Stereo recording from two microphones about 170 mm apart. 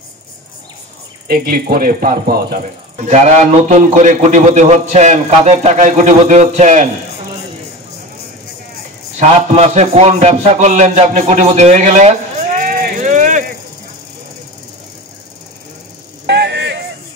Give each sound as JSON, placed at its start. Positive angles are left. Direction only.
{"t": 1.2, "sound": "speech", "side_deg": -60}
{"t": 3.1, "sound": "a man's voice", "side_deg": -45}
{"t": 9.2, "sound": "a man's voice", "side_deg": -40}
{"t": 16.3, "sound": "a sound", "side_deg": -80}